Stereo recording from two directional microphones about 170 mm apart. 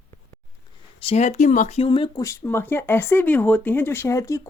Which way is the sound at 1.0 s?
40° left (ahead or behind).